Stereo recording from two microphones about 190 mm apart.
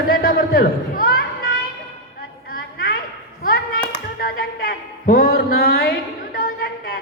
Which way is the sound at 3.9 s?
50° left (ahead or behind).